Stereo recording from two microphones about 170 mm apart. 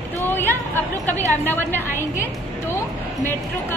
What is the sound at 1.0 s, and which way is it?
A woman's voice, 10° left (ahead or behind).